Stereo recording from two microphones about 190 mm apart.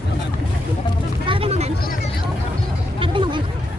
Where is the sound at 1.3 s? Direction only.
30° right (ahead or behind).